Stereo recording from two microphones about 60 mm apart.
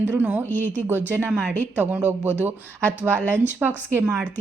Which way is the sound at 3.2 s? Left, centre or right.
Left.